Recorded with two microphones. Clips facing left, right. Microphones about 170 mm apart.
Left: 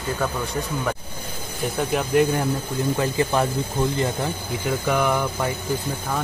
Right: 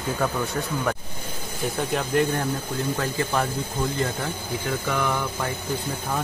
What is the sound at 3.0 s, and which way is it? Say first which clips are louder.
Speech: left 5 dB; 15° left (ahead or behind).